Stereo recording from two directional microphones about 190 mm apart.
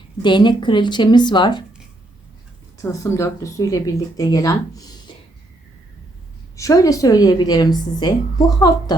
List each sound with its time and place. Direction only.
0.2 s a woman's voice: 25° left (ahead or behind)
2.8 s speech: 15° left (ahead or behind)
6.6 s a woman's voice: 15° left (ahead or behind)